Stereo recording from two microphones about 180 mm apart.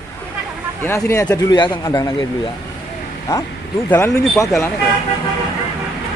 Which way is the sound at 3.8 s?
10° left (ahead or behind).